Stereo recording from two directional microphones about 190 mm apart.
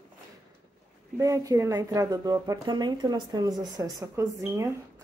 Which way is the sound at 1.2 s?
15° right (ahead or behind).